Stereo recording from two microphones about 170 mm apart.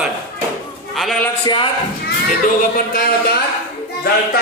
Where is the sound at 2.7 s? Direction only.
60° left (ahead or behind).